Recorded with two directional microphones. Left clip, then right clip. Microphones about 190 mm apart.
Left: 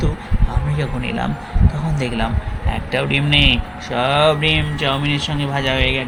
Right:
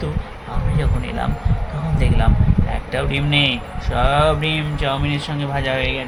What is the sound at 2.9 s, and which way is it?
Speech, 5° left (ahead or behind).